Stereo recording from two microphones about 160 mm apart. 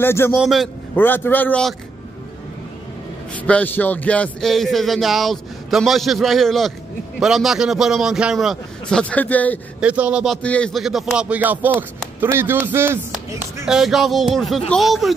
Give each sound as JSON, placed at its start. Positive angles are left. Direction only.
{"t": 0.0, "sound": "a man's voice", "side_deg": 15}
{"t": 0.4, "sound": "speech", "side_deg": 0}
{"t": 0.9, "sound": "a man's voice", "side_deg": 10}
{"t": 3.3, "sound": "speech", "side_deg": 10}
{"t": 9.8, "sound": "speech", "side_deg": -10}
{"t": 10.4, "sound": "speech", "side_deg": 5}
{"t": 13.7, "sound": "speech", "side_deg": 0}